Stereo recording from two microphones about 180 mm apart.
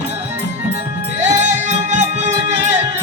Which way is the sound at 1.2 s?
40° right (ahead or behind).